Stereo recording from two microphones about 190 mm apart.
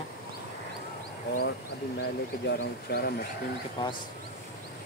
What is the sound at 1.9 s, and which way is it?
Speech, 60° left (ahead or behind).